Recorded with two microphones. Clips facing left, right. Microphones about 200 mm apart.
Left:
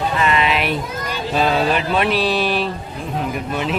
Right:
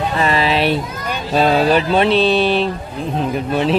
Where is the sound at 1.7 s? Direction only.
30° right (ahead or behind).